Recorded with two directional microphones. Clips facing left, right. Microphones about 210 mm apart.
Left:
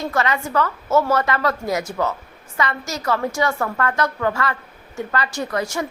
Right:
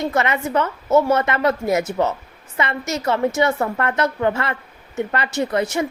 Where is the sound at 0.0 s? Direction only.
20° right (ahead or behind).